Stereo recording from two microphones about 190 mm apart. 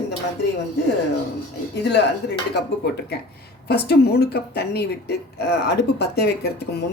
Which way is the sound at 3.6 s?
60° left (ahead or behind).